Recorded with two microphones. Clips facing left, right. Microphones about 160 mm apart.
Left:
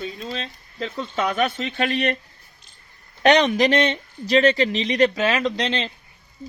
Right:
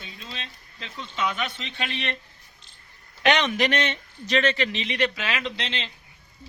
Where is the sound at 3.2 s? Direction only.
35° left (ahead or behind).